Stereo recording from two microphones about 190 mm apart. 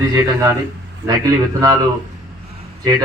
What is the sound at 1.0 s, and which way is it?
Speech, 60° right (ahead or behind).